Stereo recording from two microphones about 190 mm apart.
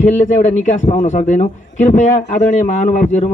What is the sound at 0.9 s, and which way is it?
A man's voice, 40° left (ahead or behind).